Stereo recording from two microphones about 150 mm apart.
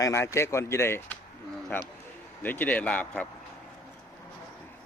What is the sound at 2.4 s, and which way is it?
Speech, 10° left (ahead or behind).